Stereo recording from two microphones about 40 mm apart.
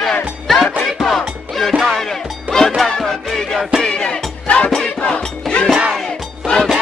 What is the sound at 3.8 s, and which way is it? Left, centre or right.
Music, left.